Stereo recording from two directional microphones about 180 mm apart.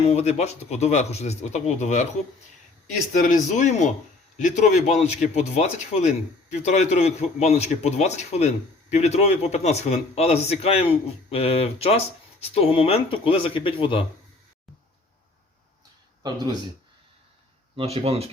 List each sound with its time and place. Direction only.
0.0 s a man's voice: 35° left (ahead or behind)
3.1 s a man's voice: 45° left (ahead or behind); by 14.0 s 30° left (ahead or behind)
16.2 s speech: 20° right (ahead or behind)
17.7 s speech: 35° right (ahead or behind)